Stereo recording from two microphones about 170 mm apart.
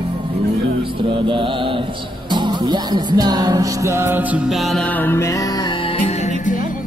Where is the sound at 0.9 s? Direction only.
30° right (ahead or behind); by 6.3 s 40° left (ahead or behind).